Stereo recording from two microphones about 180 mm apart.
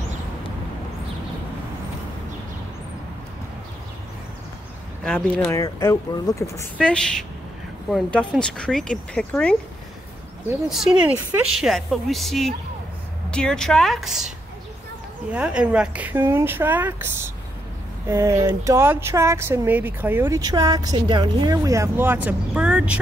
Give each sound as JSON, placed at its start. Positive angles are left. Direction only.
{"t": 5.0, "sound": "speech", "side_deg": 5}
{"t": 5.5, "sound": "speech", "side_deg": 20}
{"t": 10.7, "sound": "speech", "side_deg": -5}
{"t": 15.3, "sound": "speech", "side_deg": -5}